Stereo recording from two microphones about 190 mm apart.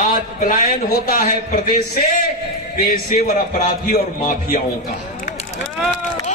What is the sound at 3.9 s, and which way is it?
Speech, 50° left (ahead or behind).